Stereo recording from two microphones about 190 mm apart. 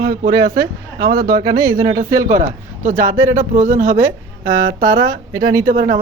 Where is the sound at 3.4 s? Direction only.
40° right (ahead or behind).